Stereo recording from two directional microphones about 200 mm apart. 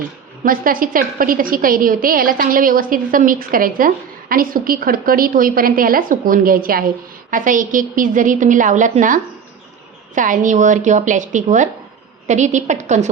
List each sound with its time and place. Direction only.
0.4 s a woman's voice: 45° right (ahead or behind)